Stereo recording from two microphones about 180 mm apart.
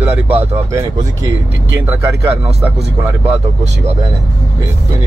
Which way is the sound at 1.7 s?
15° right (ahead or behind).